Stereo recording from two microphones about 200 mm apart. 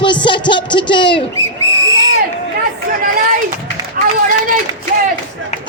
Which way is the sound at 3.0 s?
45° right (ahead or behind).